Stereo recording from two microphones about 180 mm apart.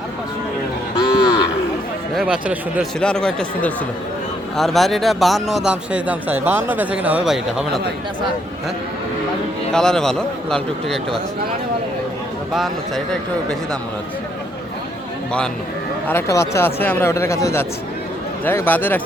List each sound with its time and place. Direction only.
0.9 s cattle: 20° left (ahead or behind)
2.1 s speech: 5° right (ahead or behind)
3.0 s speech: 5° left (ahead or behind)
9.7 s speech: 5° left (ahead or behind)
16.0 s speech: 15° left (ahead or behind)